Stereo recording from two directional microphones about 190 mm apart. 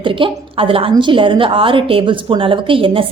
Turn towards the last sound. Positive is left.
turn(degrees=-30)  # may be behind; listen again after turning